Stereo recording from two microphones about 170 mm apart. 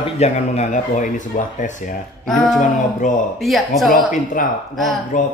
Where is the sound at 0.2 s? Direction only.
45° left (ahead or behind).